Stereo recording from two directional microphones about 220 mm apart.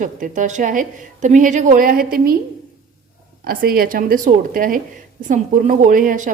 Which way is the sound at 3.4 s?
40° right (ahead or behind).